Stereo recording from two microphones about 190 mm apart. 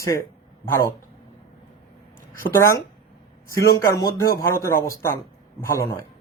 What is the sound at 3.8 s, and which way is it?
A man's voice, 15° left (ahead or behind).